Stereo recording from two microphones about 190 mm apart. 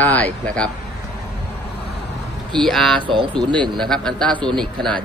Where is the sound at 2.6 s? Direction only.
Centre (ahead or behind).